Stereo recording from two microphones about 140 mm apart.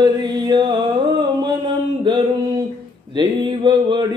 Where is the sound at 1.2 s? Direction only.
30° right (ahead or behind).